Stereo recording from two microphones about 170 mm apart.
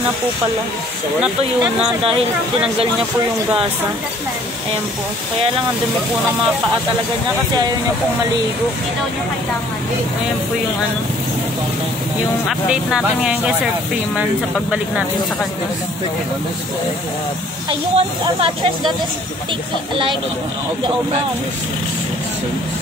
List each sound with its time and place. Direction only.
12.4 s speech: 5° right (ahead or behind)
17.6 s speech: 35° right (ahead or behind)